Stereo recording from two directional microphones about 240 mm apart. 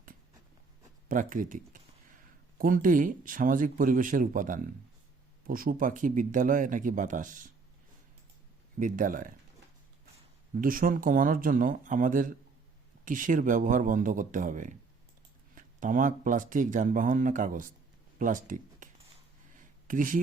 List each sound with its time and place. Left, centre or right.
1.0 s speech: right
8.8 s speech: right
10.5 s speech: right
19.5 s a sound: right